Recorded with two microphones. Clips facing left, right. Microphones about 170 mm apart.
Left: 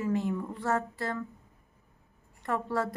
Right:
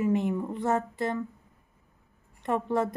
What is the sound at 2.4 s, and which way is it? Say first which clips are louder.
Speech: right 4 dB; 20° right (ahead or behind).